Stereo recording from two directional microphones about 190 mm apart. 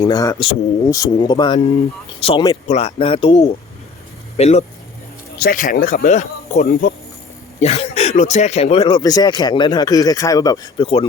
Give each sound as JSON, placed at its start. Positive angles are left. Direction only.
{"t": 0.0, "sound": "speech", "side_deg": 20}
{"t": 5.4, "sound": "speech", "side_deg": 45}